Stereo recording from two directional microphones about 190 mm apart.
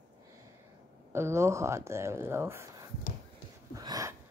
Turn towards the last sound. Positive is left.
turn(degrees=-20)  # may be behind; listen again after turning